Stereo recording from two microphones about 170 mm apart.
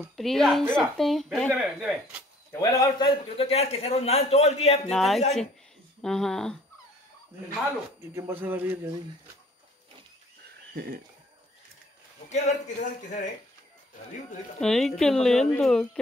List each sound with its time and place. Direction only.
0.1 s speech: centre (ahead or behind)
2.6 s a man's voice: 20° left (ahead or behind)
3.3 s a man's voice: 35° left (ahead or behind)
4.8 s speech: centre (ahead or behind)
8.1 s a man's voice: 15° right (ahead or behind)
12.3 s a man's voice: 40° left (ahead or behind)
14.6 s speech: centre (ahead or behind)